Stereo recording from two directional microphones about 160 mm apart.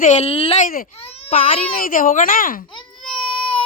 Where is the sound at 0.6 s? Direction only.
60° left (ahead or behind).